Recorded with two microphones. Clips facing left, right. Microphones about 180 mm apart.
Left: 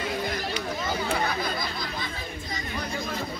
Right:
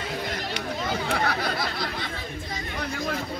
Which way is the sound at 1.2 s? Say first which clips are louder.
Right 2 dB; 75° right (ahead or behind).